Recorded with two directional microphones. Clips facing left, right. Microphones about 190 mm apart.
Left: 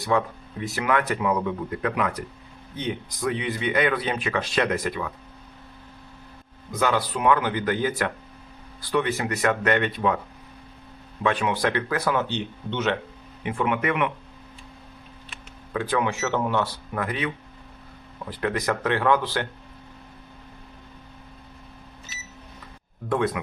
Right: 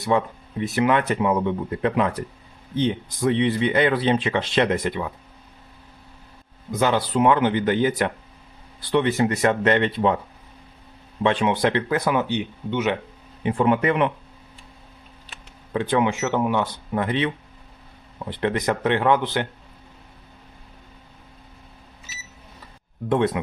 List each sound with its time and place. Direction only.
0.0 s speech: 20° right (ahead or behind)
6.7 s speech: 25° right (ahead or behind)
11.2 s speech: 25° right (ahead or behind)
13.4 s speech: 35° right (ahead or behind)
15.7 s speech: 25° right (ahead or behind)
23.0 s speech: 25° right (ahead or behind)